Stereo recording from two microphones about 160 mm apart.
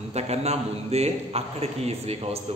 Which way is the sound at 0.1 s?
40° right (ahead or behind).